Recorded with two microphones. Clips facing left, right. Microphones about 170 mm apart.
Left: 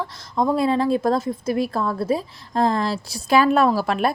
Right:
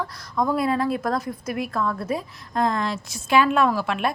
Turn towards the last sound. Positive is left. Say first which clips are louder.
# left 3 dB
turn(degrees=35)  # may be behind; listen again after turning